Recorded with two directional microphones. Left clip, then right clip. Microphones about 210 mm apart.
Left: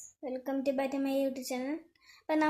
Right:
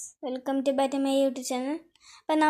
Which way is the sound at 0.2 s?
25° right (ahead or behind).